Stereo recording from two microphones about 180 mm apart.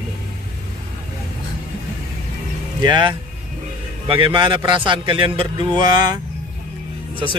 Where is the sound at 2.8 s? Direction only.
25° right (ahead or behind).